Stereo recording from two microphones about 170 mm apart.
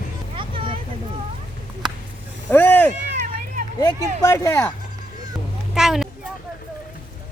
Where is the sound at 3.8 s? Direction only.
20° left (ahead or behind).